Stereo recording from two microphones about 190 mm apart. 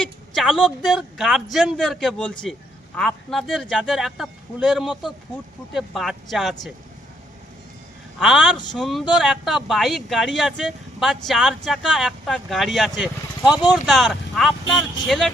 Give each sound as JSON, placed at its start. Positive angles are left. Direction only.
{"t": 0.0, "sound": "a woman's voice", "side_deg": 0}
{"t": 8.2, "sound": "speech", "side_deg": 0}